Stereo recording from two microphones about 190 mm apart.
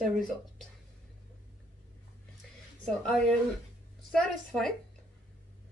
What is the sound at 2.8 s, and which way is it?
Speech, 5° left (ahead or behind).